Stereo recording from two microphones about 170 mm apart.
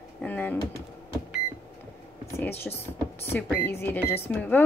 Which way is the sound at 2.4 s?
15° left (ahead or behind).